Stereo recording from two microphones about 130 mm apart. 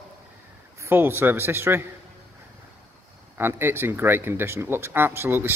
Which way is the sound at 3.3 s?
15° right (ahead or behind).